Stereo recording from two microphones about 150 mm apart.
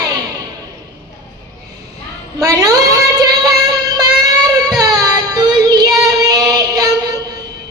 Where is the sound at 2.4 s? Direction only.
25° right (ahead or behind).